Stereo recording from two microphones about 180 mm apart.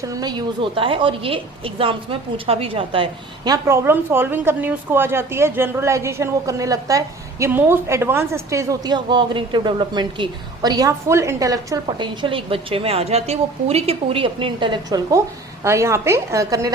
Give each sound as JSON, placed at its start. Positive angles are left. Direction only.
{"t": 0.0, "sound": "a woman's voice", "side_deg": -20}